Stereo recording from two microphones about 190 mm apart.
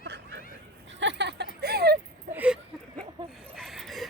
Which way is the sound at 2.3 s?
5° right (ahead or behind).